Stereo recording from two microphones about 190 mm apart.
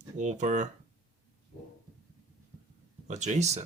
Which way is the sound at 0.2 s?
40° right (ahead or behind).